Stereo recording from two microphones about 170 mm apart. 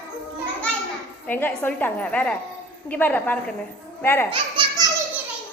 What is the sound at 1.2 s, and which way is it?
A woman's voice, 10° left (ahead or behind).